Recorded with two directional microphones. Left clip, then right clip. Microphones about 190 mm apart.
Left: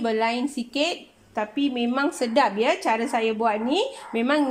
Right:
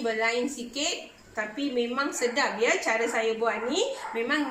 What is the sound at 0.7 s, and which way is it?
A woman's voice, 60° left (ahead or behind).